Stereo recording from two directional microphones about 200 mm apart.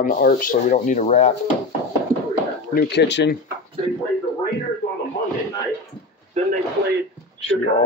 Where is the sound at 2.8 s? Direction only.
55° left (ahead or behind).